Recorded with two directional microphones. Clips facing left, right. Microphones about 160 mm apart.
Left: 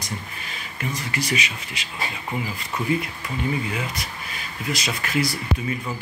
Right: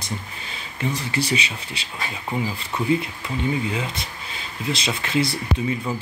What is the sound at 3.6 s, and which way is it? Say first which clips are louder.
Speech: right 2 dB; 25° right (ahead or behind).